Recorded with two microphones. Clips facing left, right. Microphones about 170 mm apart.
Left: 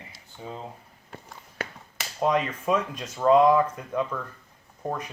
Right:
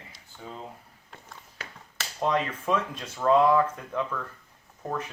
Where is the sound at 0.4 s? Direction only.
20° left (ahead or behind).